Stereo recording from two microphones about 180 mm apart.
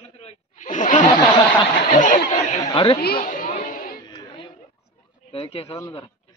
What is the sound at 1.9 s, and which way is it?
Speech, 45° left (ahead or behind).